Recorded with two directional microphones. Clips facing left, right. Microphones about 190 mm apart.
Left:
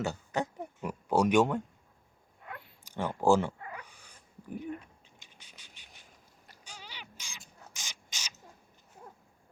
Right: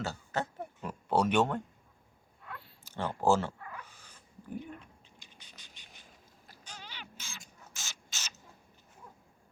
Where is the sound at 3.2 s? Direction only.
15° left (ahead or behind).